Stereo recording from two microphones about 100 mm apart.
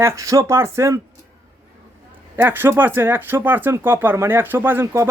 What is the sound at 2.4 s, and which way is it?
Speech, 20° right (ahead or behind).